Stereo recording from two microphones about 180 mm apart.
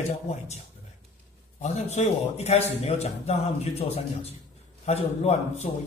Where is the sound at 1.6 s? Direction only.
40° left (ahead or behind).